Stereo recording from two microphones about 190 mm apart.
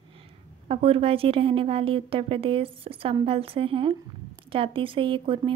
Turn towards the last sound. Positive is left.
turn(degrees=-25)  # may be behind; listen again after turning